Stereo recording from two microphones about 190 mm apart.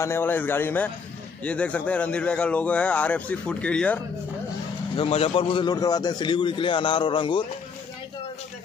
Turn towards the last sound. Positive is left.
turn(degrees=25)  # may be behind; listen again after turning